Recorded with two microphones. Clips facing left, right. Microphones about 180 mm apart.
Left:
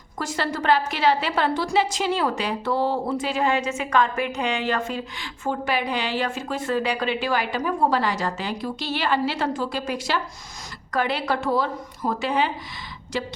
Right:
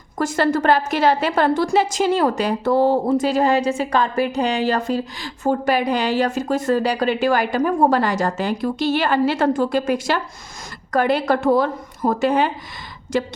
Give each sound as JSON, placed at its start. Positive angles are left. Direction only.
{"t": 0.2, "sound": "a woman's voice", "side_deg": -50}